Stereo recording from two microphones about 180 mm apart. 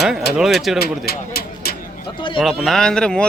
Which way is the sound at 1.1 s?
60° left (ahead or behind).